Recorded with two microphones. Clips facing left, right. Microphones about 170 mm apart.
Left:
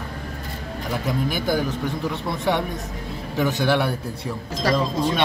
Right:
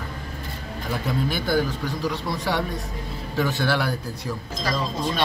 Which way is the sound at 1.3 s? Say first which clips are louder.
Right 1 dB; 20° left (ahead or behind).